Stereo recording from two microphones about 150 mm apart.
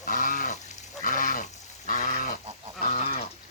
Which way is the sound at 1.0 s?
65° left (ahead or behind).